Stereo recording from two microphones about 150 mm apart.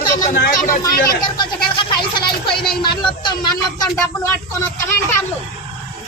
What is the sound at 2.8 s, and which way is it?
Speech, 30° left (ahead or behind).